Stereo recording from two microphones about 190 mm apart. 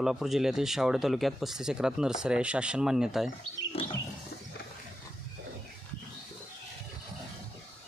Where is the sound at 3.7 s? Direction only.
30° left (ahead or behind).